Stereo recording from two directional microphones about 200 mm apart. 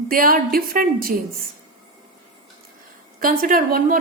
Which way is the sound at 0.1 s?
45° right (ahead or behind).